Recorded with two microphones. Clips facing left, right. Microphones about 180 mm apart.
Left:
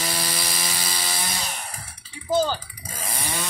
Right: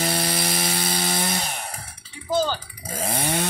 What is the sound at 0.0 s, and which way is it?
Mantra, 60° right (ahead or behind).